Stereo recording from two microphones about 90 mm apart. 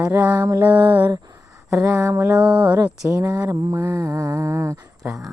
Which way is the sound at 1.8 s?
35° right (ahead or behind).